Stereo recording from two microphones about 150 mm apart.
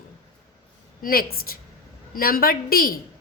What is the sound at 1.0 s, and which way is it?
A woman's voice, 80° left.